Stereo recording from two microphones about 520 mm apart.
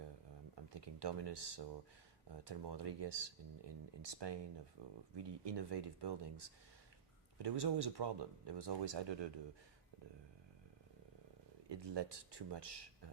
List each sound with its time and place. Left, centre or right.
0.5 s speech: right
7.3 s speech: right
11.7 s speech: right